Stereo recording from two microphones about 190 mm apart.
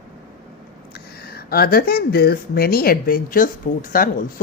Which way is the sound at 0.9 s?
55° left (ahead or behind).